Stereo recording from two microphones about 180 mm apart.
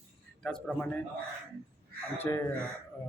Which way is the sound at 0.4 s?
5° left (ahead or behind).